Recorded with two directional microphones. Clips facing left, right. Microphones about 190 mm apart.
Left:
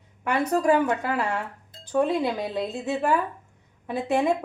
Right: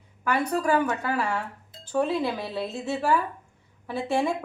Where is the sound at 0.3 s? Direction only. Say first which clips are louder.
Left 3 dB; 25° left (ahead or behind).